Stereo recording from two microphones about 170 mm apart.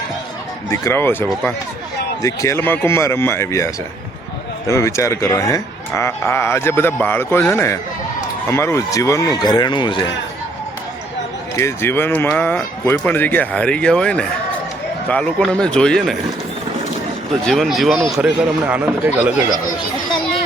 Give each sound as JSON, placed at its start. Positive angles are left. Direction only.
{"t": 0.7, "sound": "speech", "side_deg": 15}
{"t": 11.5, "sound": "a man's voice", "side_deg": 15}
{"t": 17.4, "sound": "a man's voice", "side_deg": 0}